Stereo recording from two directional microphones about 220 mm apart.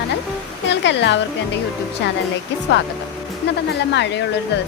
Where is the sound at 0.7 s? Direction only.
55° left (ahead or behind).